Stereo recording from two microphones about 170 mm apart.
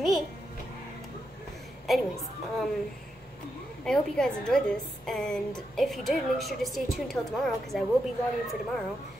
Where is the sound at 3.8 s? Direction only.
5° left (ahead or behind).